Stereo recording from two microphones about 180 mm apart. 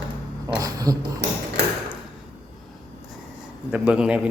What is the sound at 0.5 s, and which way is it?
Speech, 20° right (ahead or behind).